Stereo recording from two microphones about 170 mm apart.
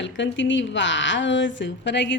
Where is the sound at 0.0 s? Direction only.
90° left.